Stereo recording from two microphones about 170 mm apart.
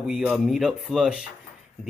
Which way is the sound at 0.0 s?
5° right (ahead or behind).